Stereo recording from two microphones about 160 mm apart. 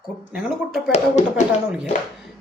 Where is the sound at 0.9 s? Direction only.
45° left (ahead or behind).